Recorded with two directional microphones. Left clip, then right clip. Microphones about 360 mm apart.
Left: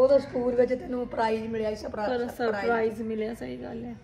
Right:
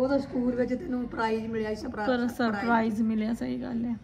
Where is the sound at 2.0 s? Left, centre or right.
Centre.